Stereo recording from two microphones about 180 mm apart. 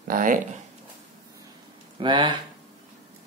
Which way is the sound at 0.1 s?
50° right (ahead or behind).